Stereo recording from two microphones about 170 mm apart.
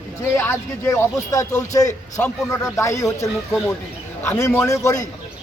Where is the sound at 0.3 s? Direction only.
15° left (ahead or behind).